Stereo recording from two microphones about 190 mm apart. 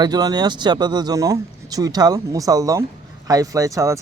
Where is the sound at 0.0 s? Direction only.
20° right (ahead or behind).